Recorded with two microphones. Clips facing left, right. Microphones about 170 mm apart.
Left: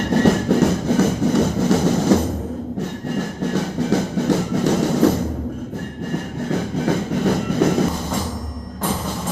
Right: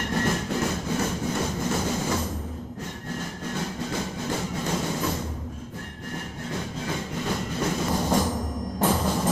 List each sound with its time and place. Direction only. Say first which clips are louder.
0.2 s a sound: left 11 dB; 70° left (ahead or behind)
3.5 s music: left 11 dB; 70° left (ahead or behind)
6.5 s train: left 11 dB; 60° left (ahead or behind)